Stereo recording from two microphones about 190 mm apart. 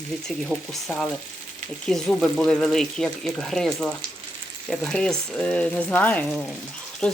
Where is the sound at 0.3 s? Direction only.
Centre (ahead or behind).